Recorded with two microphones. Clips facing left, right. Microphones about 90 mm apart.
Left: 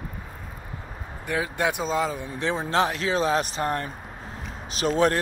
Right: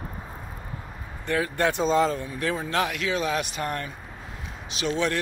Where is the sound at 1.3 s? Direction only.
15° left (ahead or behind).